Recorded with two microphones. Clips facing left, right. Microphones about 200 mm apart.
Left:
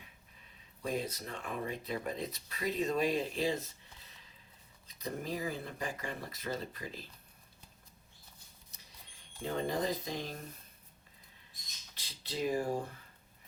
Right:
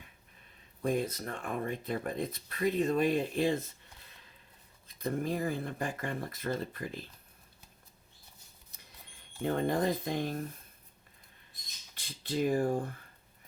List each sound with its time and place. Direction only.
0.8 s speech: 50° right (ahead or behind)
4.9 s speech: 55° right (ahead or behind)
9.4 s speech: 55° right (ahead or behind)
11.9 s speech: 50° right (ahead or behind)